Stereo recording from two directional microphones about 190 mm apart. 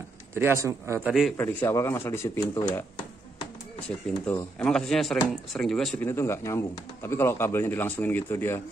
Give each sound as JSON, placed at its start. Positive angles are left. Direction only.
{"t": 0.3, "sound": "speech", "side_deg": -10}
{"t": 1.3, "sound": "speech", "side_deg": 10}
{"t": 4.3, "sound": "speech", "side_deg": 5}
{"t": 6.0, "sound": "speech", "side_deg": 15}